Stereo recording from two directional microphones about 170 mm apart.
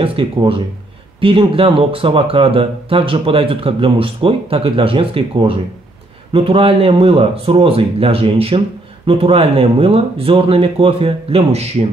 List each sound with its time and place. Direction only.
0.0 s speech: 30° right (ahead or behind)